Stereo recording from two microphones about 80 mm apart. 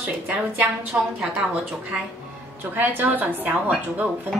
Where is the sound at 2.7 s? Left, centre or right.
Right.